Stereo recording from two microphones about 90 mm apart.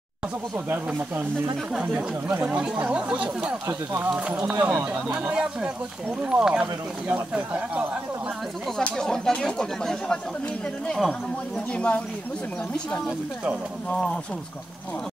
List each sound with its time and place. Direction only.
1.7 s speech: 10° right (ahead or behind)
3.6 s speech: 25° right (ahead or behind)
4.1 s speech: 15° right (ahead or behind)
8.7 s speech: 5° left (ahead or behind)